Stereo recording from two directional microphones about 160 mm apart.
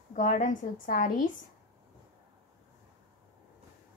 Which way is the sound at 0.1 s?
50° left (ahead or behind).